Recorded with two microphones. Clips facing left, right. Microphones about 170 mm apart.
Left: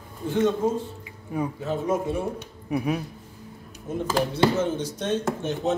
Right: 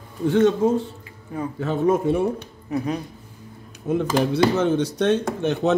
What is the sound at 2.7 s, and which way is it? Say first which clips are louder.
Speech: right 1 dB; 10° left (ahead or behind).